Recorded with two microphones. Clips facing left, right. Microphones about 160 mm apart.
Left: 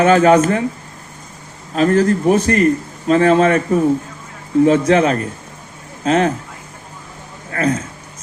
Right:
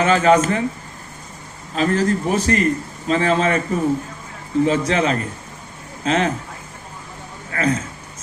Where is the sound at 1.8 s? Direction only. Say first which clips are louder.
Left 5 dB; 50° left (ahead or behind).